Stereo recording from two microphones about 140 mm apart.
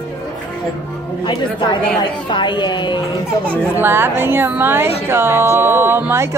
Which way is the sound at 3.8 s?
15° right (ahead or behind).